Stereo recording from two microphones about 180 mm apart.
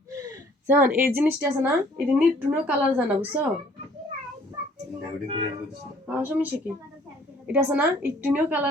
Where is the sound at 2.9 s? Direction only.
10° right (ahead or behind).